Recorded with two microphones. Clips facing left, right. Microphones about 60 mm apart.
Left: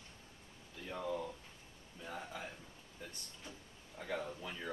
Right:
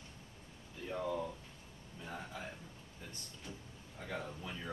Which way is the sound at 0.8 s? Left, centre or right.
Centre.